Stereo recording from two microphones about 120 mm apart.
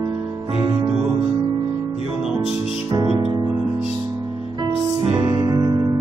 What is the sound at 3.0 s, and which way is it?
Music, 45° right (ahead or behind).